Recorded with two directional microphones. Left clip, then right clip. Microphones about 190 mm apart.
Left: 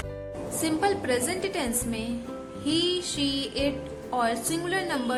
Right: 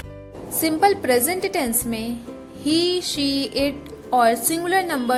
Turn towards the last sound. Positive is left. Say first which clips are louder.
# right 7 dB
turn(degrees=-35)  # may be behind; listen again after turning